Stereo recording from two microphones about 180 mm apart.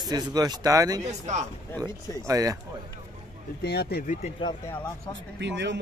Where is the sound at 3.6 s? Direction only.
65° left (ahead or behind).